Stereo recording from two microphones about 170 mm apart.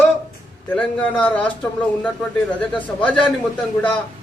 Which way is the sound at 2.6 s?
10° left (ahead or behind).